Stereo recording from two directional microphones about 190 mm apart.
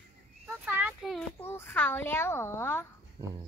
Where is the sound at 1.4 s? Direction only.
10° left (ahead or behind).